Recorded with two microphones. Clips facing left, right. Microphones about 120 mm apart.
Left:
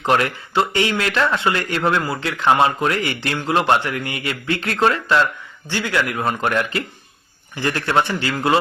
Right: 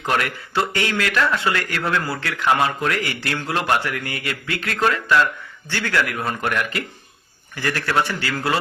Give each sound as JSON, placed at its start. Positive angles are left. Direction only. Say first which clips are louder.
{"t": 0.0, "sound": "a man's voice", "louder": "left 4 dB", "side_deg": 25}
{"t": 5.6, "sound": "a man's voice", "louder": "left 1 dB", "side_deg": 15}